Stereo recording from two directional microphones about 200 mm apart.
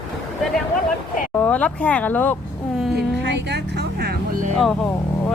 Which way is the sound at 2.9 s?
55° right (ahead or behind).